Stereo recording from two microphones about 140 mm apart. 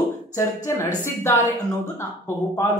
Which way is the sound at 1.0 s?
20° left (ahead or behind).